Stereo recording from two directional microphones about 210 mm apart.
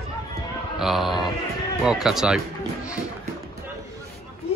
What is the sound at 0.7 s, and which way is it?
Speech, centre (ahead or behind).